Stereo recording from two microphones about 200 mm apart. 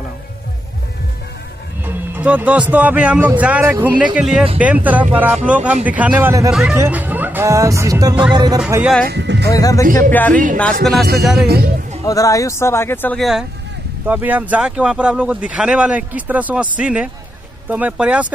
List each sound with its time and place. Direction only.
1.9 s music: 10° right (ahead or behind)
2.7 s speech: 10° right (ahead or behind)
9.0 s speech: 60° right (ahead or behind)
9.5 s speech: 15° left (ahead or behind)
10.8 s music: centre (ahead or behind)
11.4 s a man's voice: 50° right (ahead or behind)
12.0 s speech: 15° left (ahead or behind); by 18.3 s 5° right (ahead or behind)